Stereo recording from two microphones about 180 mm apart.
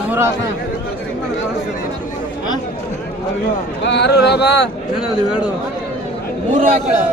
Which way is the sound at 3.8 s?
70° left (ahead or behind).